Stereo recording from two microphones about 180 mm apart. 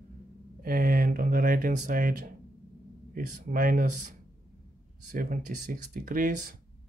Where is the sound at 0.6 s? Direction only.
55° right (ahead or behind).